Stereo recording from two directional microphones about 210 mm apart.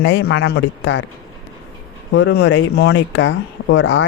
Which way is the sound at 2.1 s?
60° left (ahead or behind).